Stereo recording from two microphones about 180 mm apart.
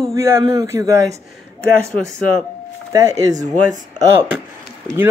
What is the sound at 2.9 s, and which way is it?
Speech, 20° right (ahead or behind).